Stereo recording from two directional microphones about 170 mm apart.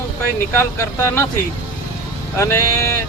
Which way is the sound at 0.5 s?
15° left (ahead or behind).